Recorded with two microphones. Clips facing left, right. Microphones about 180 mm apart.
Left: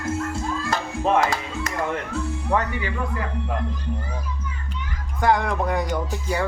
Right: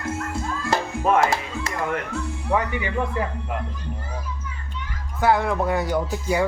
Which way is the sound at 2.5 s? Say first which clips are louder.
Even; 5° right (ahead or behind).